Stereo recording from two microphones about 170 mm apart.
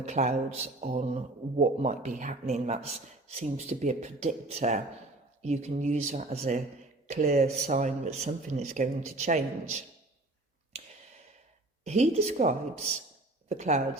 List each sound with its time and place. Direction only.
0.0 s speech: 40° right (ahead or behind)
11.9 s speech: 40° right (ahead or behind)